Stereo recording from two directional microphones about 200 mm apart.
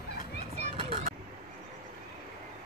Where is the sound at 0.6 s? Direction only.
30° right (ahead or behind).